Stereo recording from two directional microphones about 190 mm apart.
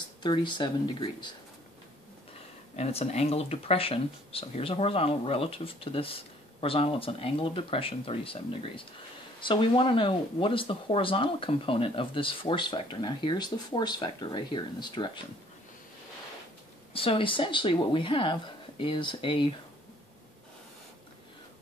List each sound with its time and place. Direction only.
0.2 s speech: 25° left (ahead or behind)
2.7 s speech: 35° left (ahead or behind)
16.9 s speech: 30° left (ahead or behind)